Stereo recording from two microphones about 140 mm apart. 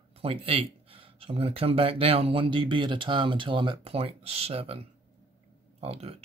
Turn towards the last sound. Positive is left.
turn(degrees=-45)  # may be behind; listen again after turning